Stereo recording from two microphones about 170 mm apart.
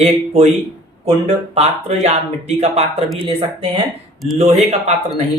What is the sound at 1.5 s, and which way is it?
Speech, 40° right (ahead or behind).